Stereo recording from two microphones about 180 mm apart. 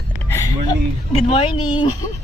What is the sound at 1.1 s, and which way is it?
Speech, 30° left (ahead or behind).